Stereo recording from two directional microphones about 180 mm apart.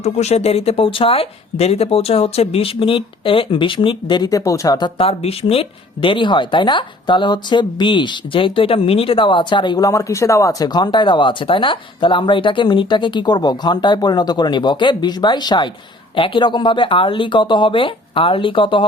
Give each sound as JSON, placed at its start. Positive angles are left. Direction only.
{"t": 0.0, "sound": "speech", "side_deg": 35}